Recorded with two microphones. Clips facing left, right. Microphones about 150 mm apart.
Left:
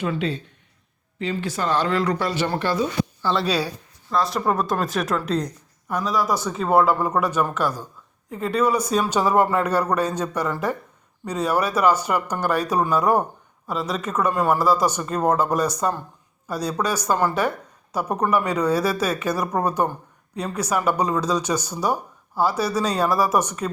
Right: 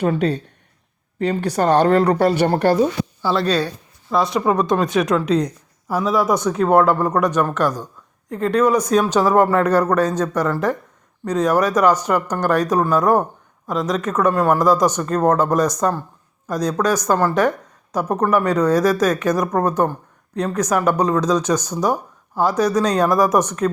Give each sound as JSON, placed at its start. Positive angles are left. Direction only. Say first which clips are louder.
{"t": 0.0, "sound": "speech", "louder": "right 6 dB", "side_deg": -45}
{"t": 3.3, "sound": "a woman's voice", "louder": "right 4 dB", "side_deg": 10}